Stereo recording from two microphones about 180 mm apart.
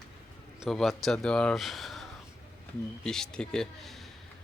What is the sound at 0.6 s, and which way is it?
Speech, centre (ahead or behind).